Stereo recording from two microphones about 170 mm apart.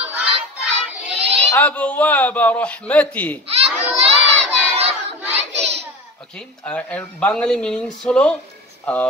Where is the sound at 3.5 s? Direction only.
35° right (ahead or behind).